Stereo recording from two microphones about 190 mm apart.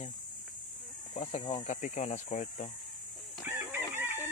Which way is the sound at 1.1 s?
30° left (ahead or behind).